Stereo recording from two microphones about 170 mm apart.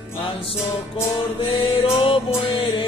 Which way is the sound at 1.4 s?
35° left (ahead or behind).